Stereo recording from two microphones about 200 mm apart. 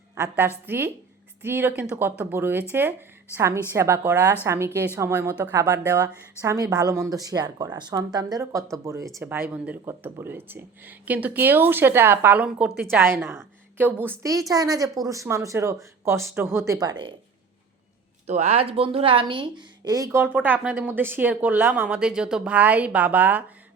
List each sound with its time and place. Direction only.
0.2 s a woman's voice: 10° right (ahead or behind)
18.3 s a woman's voice: 30° right (ahead or behind); by 23.4 s 10° right (ahead or behind)